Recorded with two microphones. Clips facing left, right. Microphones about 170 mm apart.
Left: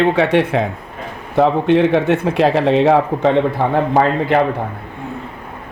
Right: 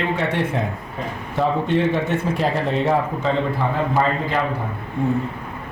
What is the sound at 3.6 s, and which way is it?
Speech, 60° left (ahead or behind).